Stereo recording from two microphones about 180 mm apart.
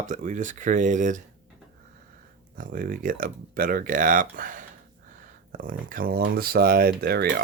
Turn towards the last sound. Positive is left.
turn(degrees=-60)  # may be behind; listen again after turning